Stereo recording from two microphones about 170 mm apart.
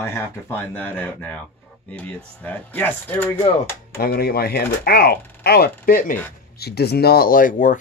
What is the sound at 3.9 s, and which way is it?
Speech, 65° left (ahead or behind).